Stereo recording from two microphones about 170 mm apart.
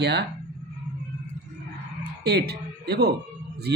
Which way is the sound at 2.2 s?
75° right (ahead or behind).